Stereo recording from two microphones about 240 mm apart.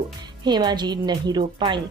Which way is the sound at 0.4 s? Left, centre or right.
Centre.